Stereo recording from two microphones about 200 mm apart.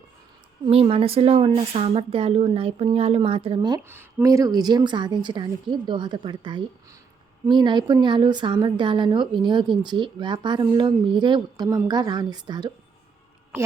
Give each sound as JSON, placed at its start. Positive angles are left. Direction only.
{"t": 0.7, "sound": "a woman's voice", "side_deg": -30}